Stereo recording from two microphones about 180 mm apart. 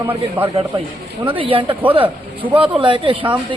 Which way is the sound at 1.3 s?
30° right (ahead or behind).